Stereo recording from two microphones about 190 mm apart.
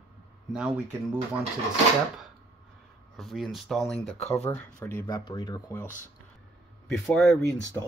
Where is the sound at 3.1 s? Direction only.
Centre (ahead or behind); by 5.8 s 20° left (ahead or behind).